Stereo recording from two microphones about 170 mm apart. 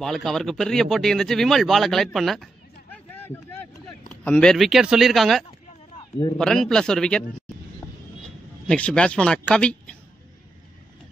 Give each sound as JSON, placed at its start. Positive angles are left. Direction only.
{"t": 0.0, "sound": "speech", "side_deg": 0}
{"t": 2.1, "sound": "a sound", "side_deg": 0}
{"t": 4.2, "sound": "speech", "side_deg": 5}
{"t": 8.6, "sound": "speech", "side_deg": 5}